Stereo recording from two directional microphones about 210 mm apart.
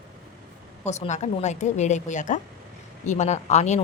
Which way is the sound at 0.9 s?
35° left (ahead or behind).